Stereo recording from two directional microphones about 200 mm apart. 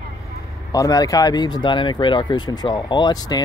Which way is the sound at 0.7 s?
15° left (ahead or behind).